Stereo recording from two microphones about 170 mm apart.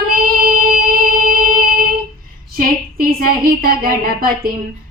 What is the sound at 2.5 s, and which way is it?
A woman's voice, 55° right (ahead or behind).